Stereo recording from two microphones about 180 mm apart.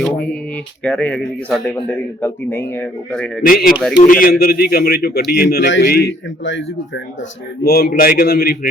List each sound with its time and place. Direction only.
0.0 s a man's voice: 5° left (ahead or behind)
4.0 s a man's voice: 50° left (ahead or behind)